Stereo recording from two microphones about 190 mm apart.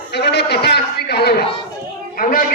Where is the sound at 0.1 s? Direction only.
60° left (ahead or behind).